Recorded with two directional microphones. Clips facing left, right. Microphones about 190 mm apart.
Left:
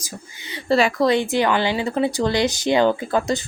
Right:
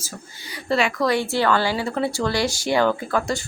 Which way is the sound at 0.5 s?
35° left (ahead or behind).